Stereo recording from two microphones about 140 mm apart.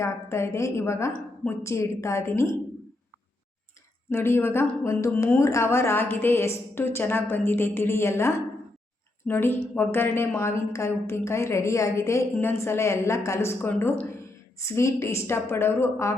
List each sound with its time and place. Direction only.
0.0 s a woman's voice: 20° left (ahead or behind)
4.1 s a woman's voice: 15° left (ahead or behind)